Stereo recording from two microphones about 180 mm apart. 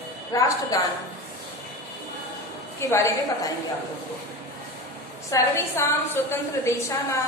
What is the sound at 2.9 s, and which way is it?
Speech, 15° left (ahead or behind).